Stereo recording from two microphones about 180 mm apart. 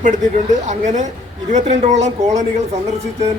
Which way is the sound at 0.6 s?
40° right (ahead or behind).